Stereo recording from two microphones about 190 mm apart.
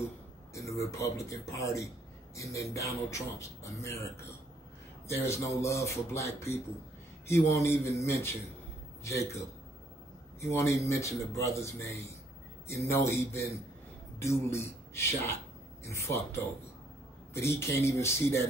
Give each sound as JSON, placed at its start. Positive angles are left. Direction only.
{"t": 0.6, "sound": "a man's voice", "side_deg": 15}
{"t": 10.5, "sound": "a man's voice", "side_deg": 15}